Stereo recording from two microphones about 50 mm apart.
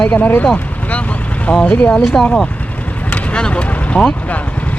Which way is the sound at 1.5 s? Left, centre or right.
Left.